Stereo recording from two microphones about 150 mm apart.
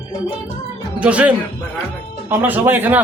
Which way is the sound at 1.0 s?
10° right (ahead or behind).